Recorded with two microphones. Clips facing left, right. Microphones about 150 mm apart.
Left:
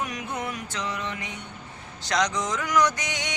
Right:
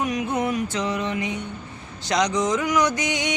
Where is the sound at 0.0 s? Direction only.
20° right (ahead or behind).